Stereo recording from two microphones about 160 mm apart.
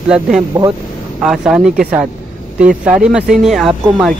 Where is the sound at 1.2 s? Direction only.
5° right (ahead or behind).